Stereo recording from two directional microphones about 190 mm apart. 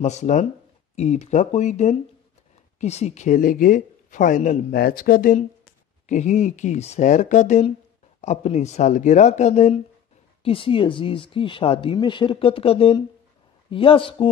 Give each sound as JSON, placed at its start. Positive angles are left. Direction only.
{"t": 0.0, "sound": "speech", "side_deg": 40}